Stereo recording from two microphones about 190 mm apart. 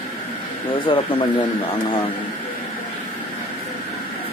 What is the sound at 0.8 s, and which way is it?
Speech, 25° left (ahead or behind).